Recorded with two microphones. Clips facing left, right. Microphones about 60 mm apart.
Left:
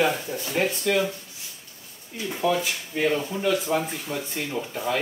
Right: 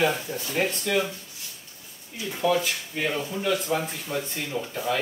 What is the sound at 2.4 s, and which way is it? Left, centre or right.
Speech, centre.